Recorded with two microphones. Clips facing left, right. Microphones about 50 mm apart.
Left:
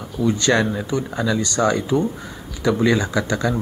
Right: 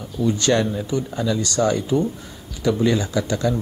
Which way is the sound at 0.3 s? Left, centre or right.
Left.